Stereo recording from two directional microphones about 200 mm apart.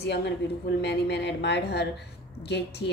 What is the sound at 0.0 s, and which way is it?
A woman's voice, 60° left (ahead or behind).